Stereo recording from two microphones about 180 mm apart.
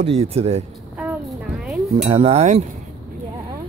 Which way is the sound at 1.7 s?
Centre (ahead or behind).